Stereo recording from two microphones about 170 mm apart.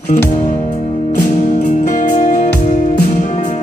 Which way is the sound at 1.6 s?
50° left (ahead or behind).